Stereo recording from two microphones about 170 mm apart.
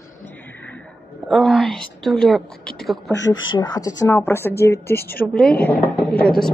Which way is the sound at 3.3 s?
25° left (ahead or behind).